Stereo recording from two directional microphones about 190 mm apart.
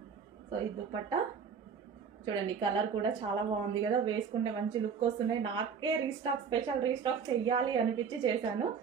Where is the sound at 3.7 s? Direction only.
25° right (ahead or behind).